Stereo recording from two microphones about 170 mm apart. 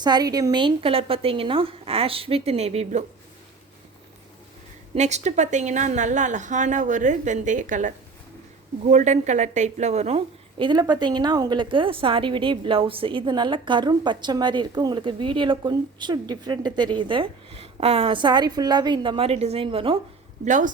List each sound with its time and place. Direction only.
0.0 s a woman's voice: 25° right (ahead or behind); by 3.0 s 40° right (ahead or behind)
4.9 s a woman's voice: 40° right (ahead or behind)
20.4 s a woman's voice: 50° right (ahead or behind)